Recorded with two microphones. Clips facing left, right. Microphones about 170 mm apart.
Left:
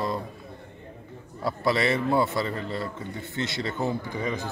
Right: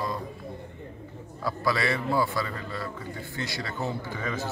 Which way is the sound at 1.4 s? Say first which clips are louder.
Left 3 dB; 25° left (ahead or behind).